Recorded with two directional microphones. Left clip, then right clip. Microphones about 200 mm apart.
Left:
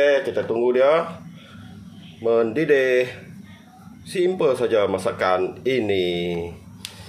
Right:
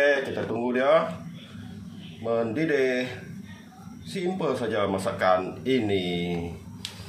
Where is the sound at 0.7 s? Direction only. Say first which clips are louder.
Left 4 dB; 40° left (ahead or behind).